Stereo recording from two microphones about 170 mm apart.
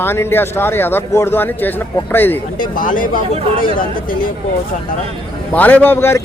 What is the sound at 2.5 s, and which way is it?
Speech, 55° left (ahead or behind).